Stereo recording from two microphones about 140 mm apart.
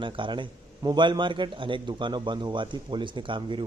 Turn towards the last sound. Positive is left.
turn(degrees=-35)  # may be behind; listen again after turning